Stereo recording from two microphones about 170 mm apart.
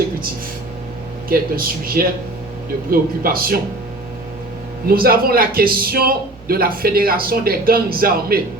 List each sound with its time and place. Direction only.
1.3 s a man's voice: 60° right (ahead or behind)
4.9 s a man's voice: 60° right (ahead or behind)